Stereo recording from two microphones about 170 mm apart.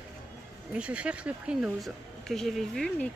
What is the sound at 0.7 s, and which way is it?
A woman's voice, 5° right (ahead or behind).